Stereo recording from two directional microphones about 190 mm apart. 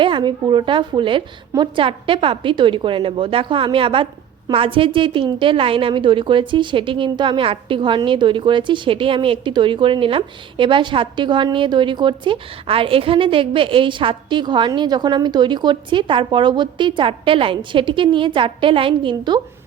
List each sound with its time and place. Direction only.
0.0 s a woman's voice: 25° right (ahead or behind)